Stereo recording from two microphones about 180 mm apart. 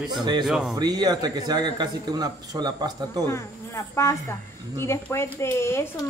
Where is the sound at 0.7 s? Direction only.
20° right (ahead or behind).